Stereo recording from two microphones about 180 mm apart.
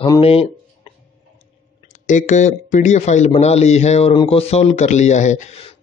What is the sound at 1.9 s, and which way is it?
Speech, 45° left (ahead or behind).